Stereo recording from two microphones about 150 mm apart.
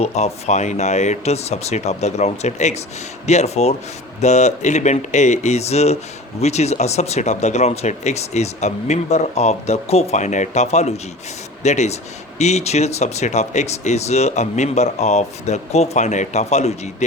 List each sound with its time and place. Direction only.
0.0 s speech: 45° left (ahead or behind)